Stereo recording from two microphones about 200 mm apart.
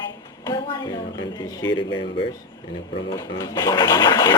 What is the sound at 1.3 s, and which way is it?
Speech, 20° left (ahead or behind).